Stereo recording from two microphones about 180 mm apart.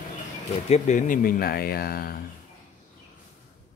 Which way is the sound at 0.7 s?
45° left (ahead or behind).